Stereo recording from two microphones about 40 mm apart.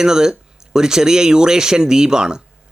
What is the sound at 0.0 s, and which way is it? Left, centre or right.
Speech, centre.